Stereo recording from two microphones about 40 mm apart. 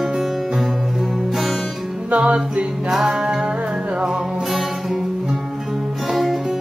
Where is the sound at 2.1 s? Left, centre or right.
Right.